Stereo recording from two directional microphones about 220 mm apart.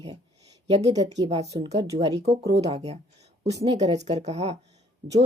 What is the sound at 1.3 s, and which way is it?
Speech, 30° right (ahead or behind).